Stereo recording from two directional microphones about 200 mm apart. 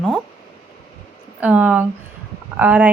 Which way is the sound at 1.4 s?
5° right (ahead or behind).